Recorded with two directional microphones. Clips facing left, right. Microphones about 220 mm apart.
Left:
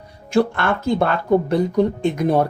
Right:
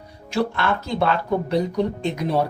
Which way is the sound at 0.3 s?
50° left (ahead or behind).